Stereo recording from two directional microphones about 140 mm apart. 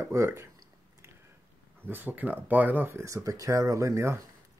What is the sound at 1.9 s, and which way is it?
Speech, 15° right (ahead or behind).